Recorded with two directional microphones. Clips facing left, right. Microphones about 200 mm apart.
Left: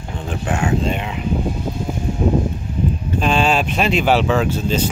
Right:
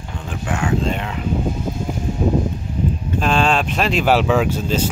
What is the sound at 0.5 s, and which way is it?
Speech, 30° left (ahead or behind).